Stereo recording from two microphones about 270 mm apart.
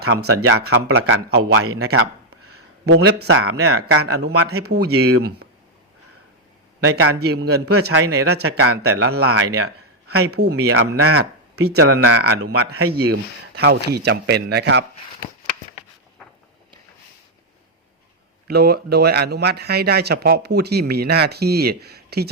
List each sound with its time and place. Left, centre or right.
0.0 s speech: right
0.3 s speech: right
2.8 s speech: right
3.8 s speech: right
6.9 s speech: right
18.4 s speech: right